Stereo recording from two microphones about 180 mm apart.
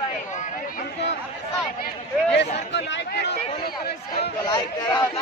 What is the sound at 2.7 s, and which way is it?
Speech, 70° left (ahead or behind).